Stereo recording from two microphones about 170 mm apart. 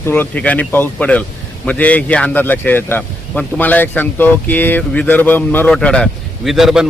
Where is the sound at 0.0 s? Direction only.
10° left (ahead or behind).